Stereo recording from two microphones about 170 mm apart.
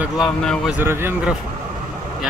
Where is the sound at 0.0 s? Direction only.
Centre (ahead or behind).